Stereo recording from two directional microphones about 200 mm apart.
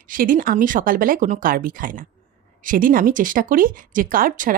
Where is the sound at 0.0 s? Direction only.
45° right (ahead or behind).